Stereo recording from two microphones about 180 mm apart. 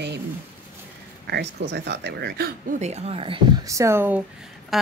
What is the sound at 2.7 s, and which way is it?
Speech, 40° right (ahead or behind).